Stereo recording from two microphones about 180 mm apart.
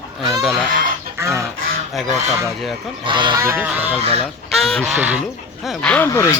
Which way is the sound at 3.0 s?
25° right (ahead or behind).